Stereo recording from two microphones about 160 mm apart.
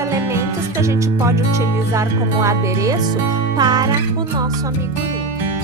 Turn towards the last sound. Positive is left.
turn(degrees=-25)  # may be behind; listen again after turning